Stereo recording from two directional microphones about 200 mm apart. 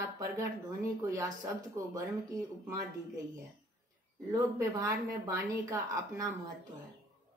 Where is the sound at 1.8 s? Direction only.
15° right (ahead or behind).